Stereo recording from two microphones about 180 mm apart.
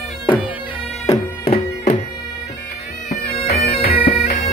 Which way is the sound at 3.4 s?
60° left (ahead or behind).